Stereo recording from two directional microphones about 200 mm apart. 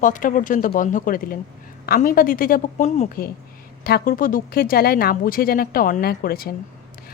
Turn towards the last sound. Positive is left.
turn(degrees=45)  # may be behind; listen again after turning